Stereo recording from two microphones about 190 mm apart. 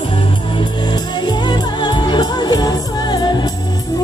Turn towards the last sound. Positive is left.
turn(degrees=20)  # may be behind; listen again after turning